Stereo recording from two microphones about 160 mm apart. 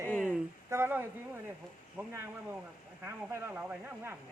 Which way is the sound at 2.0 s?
10° right (ahead or behind).